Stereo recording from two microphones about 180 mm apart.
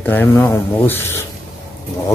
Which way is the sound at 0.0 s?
10° left (ahead or behind).